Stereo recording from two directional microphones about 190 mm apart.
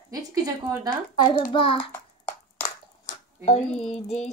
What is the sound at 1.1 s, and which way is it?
Speech, 20° left (ahead or behind).